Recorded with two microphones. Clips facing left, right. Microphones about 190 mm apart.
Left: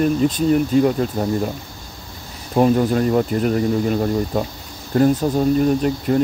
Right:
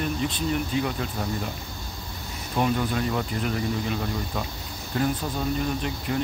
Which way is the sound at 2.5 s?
40° left (ahead or behind).